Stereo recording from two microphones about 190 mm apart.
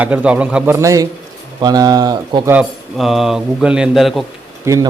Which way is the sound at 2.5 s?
5° right (ahead or behind).